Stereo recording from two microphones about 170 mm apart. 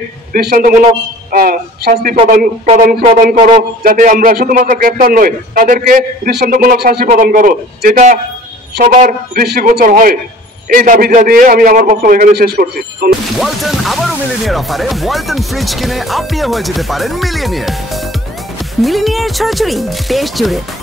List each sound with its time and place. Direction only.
0.3 s a man's voice: 60° right (ahead or behind)
2.6 s speech: 40° right (ahead or behind)
3.2 s a man's voice: 55° right (ahead or behind)
13.4 s speech: centre (ahead or behind)